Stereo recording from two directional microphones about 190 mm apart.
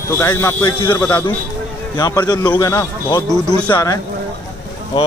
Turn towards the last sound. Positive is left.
turn(degrees=25)  # may be behind; listen again after turning